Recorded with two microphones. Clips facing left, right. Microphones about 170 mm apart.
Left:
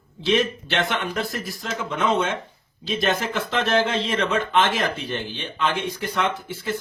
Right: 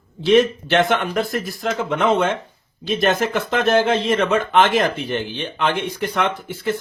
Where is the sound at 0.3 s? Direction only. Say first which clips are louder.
Right 7 dB; 50° right (ahead or behind).